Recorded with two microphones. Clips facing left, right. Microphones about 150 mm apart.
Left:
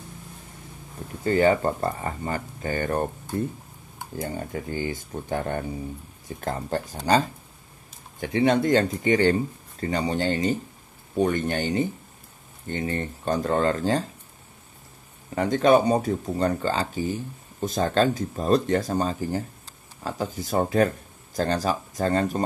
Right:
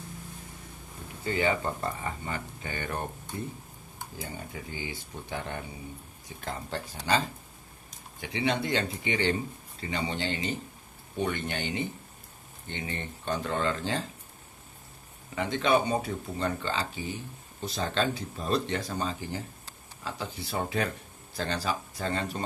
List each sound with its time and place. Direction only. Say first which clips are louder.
1.2 s speech: left 8 dB; 45° left (ahead or behind)
8.2 s speech: left 8 dB; 45° left (ahead or behind)
15.3 s speech: left 7 dB; 45° left (ahead or behind)